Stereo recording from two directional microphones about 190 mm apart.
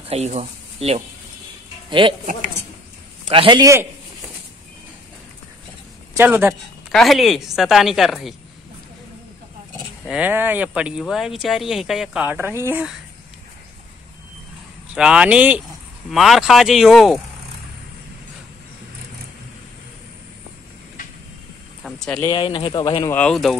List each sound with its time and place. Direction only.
0.0 s speech: 35° right (ahead or behind)
3.3 s a man's voice: 25° right (ahead or behind)
6.1 s speech: 10° right (ahead or behind)
6.9 s speech: centre (ahead or behind)
10.0 s speech: 5° right (ahead or behind)
15.0 s speech: 5° right (ahead or behind)
21.8 s vehicle: 5° left (ahead or behind)
22.2 s speech: 20° left (ahead or behind)
23.1 s speech: 5° left (ahead or behind)